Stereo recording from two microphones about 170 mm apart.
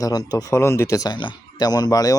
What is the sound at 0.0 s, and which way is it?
Speech, 25° left (ahead or behind).